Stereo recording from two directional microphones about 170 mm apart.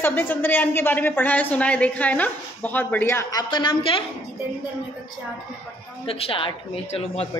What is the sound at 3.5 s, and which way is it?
Speech, 30° left (ahead or behind).